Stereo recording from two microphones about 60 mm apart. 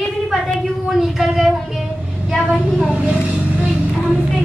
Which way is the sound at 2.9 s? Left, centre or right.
Right.